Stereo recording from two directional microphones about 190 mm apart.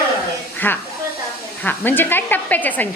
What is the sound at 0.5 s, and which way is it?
A woman's voice, 10° left (ahead or behind).